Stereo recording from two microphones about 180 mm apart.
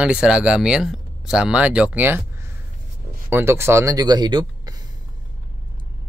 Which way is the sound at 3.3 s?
10° right (ahead or behind).